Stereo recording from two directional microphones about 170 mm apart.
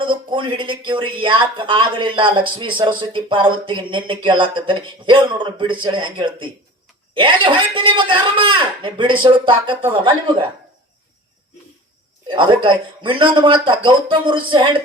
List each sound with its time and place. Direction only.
0.0 s speech: 30° right (ahead or behind)
12.3 s speech: 30° right (ahead or behind)